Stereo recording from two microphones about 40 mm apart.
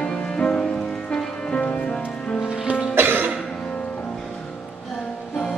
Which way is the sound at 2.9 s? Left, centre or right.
Right.